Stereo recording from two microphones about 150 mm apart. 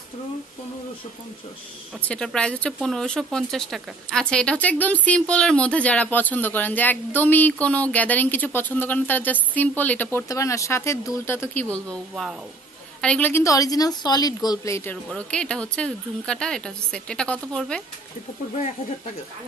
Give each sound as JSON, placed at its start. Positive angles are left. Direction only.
{"t": 2.0, "sound": "speech", "side_deg": 5}
{"t": 15.0, "sound": "speech", "side_deg": 5}